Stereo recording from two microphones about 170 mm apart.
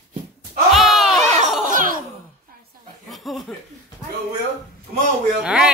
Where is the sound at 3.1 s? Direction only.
Centre (ahead or behind).